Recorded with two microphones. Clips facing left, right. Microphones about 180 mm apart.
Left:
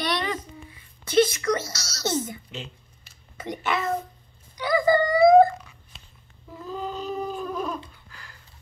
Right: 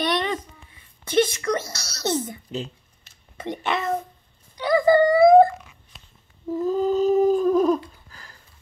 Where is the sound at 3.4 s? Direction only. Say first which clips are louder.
Right 1 dB; 25° right (ahead or behind).